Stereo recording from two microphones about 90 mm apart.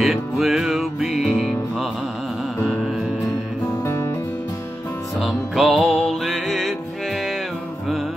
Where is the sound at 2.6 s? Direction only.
Centre (ahead or behind).